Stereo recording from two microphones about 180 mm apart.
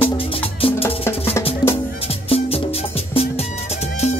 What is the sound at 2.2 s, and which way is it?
Music, 35° left (ahead or behind).